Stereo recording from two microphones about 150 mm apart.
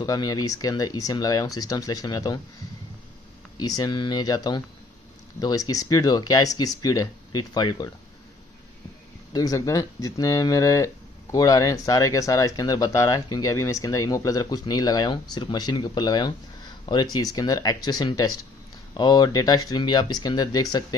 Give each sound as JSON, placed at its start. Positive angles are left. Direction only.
{"t": 0.0, "sound": "speech", "side_deg": 25}
{"t": 3.5, "sound": "speech", "side_deg": 25}
{"t": 9.3, "sound": "speech", "side_deg": 25}